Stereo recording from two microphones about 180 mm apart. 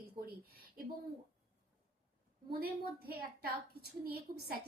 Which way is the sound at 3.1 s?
60° right (ahead or behind).